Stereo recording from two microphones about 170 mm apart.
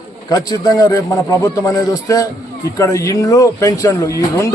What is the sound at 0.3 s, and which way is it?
Speech, 25° left (ahead or behind).